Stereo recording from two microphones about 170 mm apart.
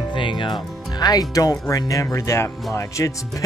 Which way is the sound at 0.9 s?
20° left (ahead or behind).